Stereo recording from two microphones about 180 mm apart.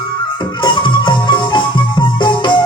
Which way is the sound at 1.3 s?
25° left (ahead or behind).